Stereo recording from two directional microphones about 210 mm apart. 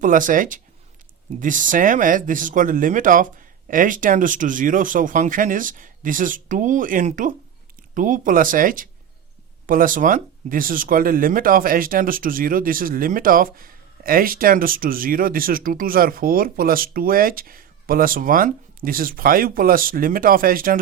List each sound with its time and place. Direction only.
0.0 s speech: 40° right (ahead or behind)